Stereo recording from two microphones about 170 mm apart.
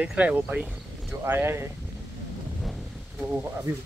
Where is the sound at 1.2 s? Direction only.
15° right (ahead or behind).